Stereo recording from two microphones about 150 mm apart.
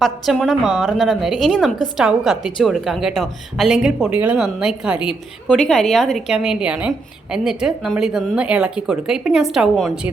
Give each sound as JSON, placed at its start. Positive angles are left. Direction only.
{"t": 0.0, "sound": "a woman's voice", "side_deg": 0}